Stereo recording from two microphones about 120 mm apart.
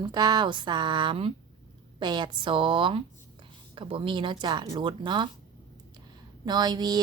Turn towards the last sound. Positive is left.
turn(degrees=-35)  # may be behind; listen again after turning